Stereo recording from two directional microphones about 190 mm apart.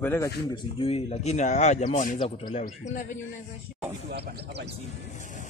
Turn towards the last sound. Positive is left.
turn(degrees=-60)  # may be behind; listen again after turning